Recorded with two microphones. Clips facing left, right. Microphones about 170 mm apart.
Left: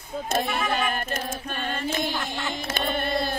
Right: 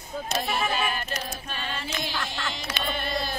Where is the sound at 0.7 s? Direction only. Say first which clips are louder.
Left 2 dB; 50° left (ahead or behind).